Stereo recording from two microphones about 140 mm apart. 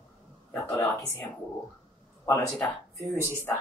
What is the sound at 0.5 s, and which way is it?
Speech, 10° left (ahead or behind).